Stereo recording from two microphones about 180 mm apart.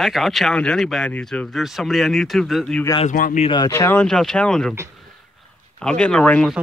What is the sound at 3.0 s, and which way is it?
Speech, 45° left (ahead or behind).